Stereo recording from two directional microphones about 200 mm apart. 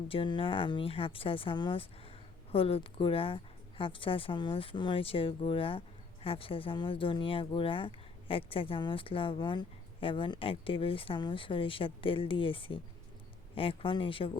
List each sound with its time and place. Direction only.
0.1 s speech: 25° left (ahead or behind)